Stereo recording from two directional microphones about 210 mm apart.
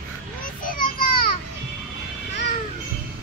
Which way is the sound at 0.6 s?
40° left (ahead or behind).